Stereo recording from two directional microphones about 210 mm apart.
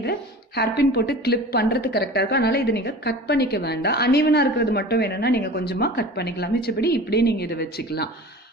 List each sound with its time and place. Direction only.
0.0 s a woman's voice: 50° left (ahead or behind)